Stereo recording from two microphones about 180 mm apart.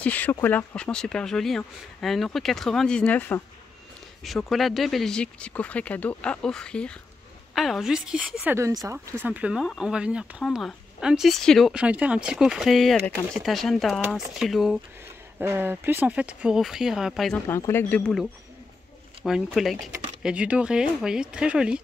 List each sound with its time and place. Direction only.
0.0 s a woman's voice: 10° left (ahead or behind)
17.5 s a woman's voice: 15° left (ahead or behind); by 21.8 s 5° right (ahead or behind)